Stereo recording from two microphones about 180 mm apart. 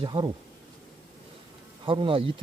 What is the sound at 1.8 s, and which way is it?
Speech, 30° right (ahead or behind).